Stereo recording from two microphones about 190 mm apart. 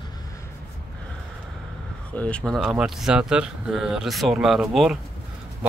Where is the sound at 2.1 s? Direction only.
5° left (ahead or behind).